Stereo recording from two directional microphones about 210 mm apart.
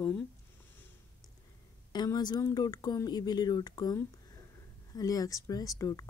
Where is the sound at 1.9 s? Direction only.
20° left (ahead or behind).